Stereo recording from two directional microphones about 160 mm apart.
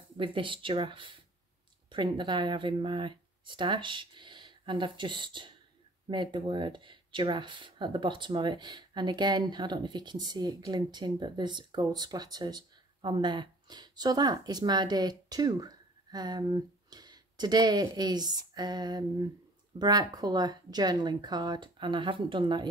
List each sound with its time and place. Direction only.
0.2 s speech: 30° right (ahead or behind)